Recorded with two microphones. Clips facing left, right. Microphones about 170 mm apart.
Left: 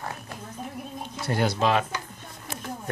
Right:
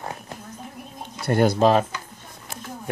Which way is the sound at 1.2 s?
50° right (ahead or behind).